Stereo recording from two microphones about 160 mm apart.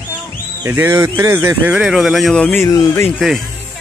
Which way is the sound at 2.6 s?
20° left (ahead or behind).